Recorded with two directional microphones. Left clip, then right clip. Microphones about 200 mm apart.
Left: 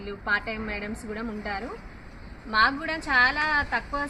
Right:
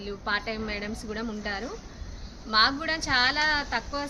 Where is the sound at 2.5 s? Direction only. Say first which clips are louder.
Even; 20° right (ahead or behind).